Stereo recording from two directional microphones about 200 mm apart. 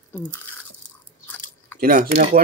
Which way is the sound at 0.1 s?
5° left (ahead or behind).